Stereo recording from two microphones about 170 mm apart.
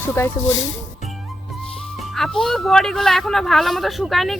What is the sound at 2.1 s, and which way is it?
Speech, centre (ahead or behind).